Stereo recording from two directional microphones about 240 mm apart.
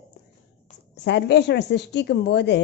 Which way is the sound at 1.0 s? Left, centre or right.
Left.